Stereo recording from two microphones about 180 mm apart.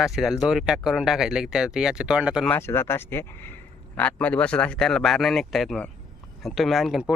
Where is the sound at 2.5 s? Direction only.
15° left (ahead or behind).